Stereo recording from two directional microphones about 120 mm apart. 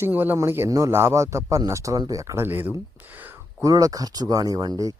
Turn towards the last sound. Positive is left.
turn(degrees=-30)  # may be behind; listen again after turning